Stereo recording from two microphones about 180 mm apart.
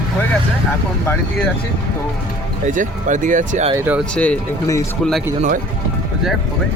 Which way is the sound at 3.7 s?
10° right (ahead or behind).